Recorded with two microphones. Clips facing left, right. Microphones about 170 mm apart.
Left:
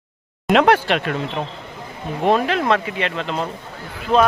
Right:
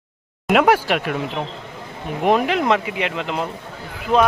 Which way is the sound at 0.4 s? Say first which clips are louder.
Left 1 dB; 5° right (ahead or behind).